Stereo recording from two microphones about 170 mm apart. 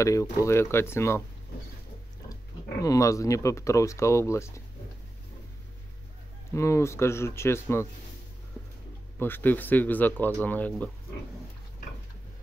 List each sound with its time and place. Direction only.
0.0 s speech: 20° left (ahead or behind)
2.8 s speech: 20° left (ahead or behind)
6.5 s speech: 15° left (ahead or behind)
8.6 s a sound: centre (ahead or behind)
9.2 s speech: 10° left (ahead or behind)